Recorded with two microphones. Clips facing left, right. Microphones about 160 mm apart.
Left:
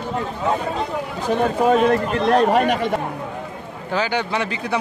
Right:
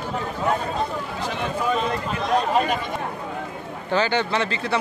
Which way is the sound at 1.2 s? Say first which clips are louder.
Left 8 dB; 45° left (ahead or behind).